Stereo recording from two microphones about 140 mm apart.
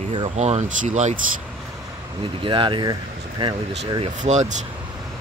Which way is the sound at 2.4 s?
35° right (ahead or behind).